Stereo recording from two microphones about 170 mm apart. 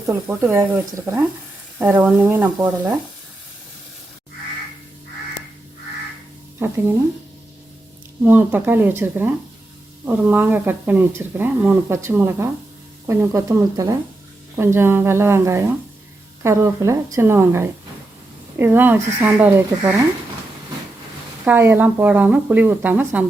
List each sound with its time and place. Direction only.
0.1 s speech: 15° right (ahead or behind)
6.6 s speech: 15° right (ahead or behind)
8.2 s speech: 10° right (ahead or behind)
21.4 s speech: 10° right (ahead or behind)